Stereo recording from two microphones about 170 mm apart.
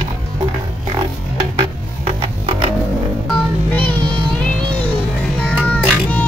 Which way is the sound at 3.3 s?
10° left (ahead or behind).